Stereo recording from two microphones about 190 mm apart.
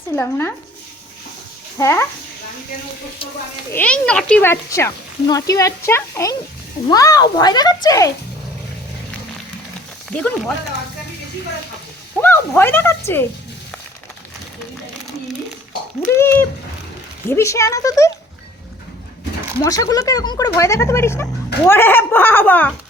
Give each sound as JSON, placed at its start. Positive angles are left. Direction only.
{"t": 0.2, "sound": "speech", "side_deg": 15}
{"t": 1.8, "sound": "speech", "side_deg": 15}
{"t": 3.7, "sound": "speech", "side_deg": 10}
{"t": 10.1, "sound": "speech", "side_deg": 5}
{"t": 12.1, "sound": "speech", "side_deg": 10}
{"t": 16.1, "sound": "speech", "side_deg": 10}
{"t": 19.6, "sound": "speech", "side_deg": 20}